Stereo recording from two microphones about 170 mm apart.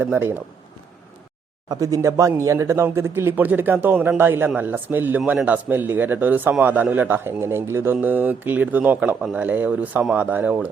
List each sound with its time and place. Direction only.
0.0 s speech: 10° right (ahead or behind)
1.7 s speech: 20° right (ahead or behind)